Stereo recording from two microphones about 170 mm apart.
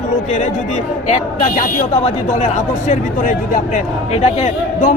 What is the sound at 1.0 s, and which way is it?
Speech, 45° left (ahead or behind).